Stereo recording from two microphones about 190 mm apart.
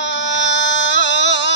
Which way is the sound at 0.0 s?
70° left (ahead or behind).